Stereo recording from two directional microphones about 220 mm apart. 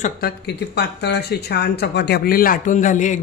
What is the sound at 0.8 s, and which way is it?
A woman's voice, 50° left (ahead or behind).